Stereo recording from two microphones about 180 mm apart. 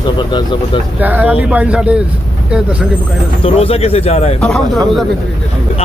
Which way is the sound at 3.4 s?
35° left (ahead or behind).